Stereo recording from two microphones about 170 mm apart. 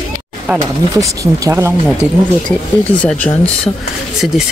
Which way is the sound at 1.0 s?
20° right (ahead or behind).